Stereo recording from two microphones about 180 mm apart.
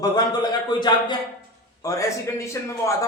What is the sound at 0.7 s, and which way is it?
Speech, 25° left (ahead or behind).